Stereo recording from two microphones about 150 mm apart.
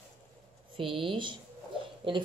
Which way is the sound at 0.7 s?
35° right (ahead or behind).